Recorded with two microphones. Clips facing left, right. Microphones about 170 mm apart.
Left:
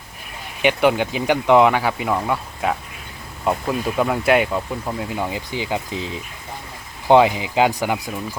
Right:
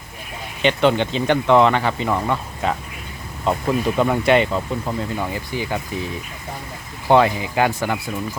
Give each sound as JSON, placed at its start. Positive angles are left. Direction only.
{"t": 0.6, "sound": "speech", "side_deg": 10}